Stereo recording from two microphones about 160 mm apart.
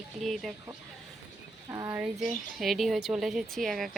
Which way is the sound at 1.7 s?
15° right (ahead or behind).